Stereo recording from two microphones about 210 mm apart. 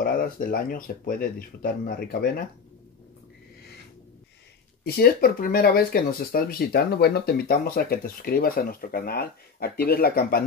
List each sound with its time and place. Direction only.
0.0 s speech: 45° left (ahead or behind)
4.8 s speech: 45° left (ahead or behind)